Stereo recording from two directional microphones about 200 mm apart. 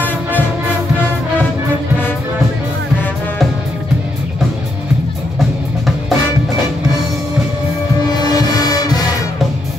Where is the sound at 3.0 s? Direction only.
10° left (ahead or behind).